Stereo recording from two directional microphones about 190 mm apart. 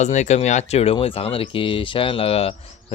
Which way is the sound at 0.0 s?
35° left (ahead or behind).